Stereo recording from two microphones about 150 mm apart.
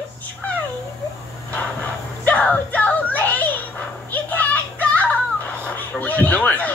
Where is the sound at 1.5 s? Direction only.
10° left (ahead or behind).